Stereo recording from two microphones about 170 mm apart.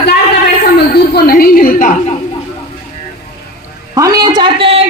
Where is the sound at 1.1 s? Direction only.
60° left (ahead or behind).